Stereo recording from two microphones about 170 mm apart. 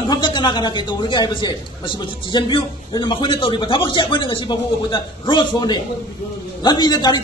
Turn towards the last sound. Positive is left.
turn(degrees=25)  # may be behind; listen again after turning